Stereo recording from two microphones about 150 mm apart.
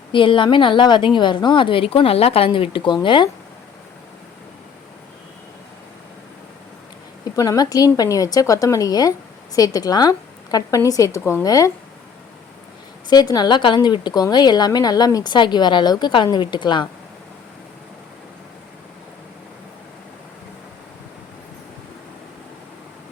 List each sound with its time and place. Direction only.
0.1 s a woman's voice: 35° left (ahead or behind)
7.3 s a woman's voice: 25° left (ahead or behind)
11.2 s speech: 10° left (ahead or behind)
11.4 s a woman's voice: 25° left (ahead or behind)
13.1 s a woman's voice: 25° left (ahead or behind)